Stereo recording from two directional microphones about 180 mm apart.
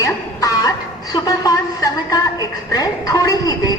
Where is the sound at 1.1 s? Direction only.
20° left (ahead or behind).